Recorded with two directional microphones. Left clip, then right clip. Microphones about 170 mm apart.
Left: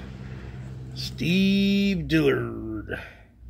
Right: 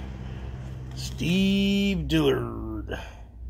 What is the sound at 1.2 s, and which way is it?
Speech, 25° left (ahead or behind).